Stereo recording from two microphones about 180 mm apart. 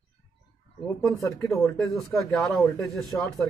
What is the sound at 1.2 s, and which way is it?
Speech, 15° left (ahead or behind).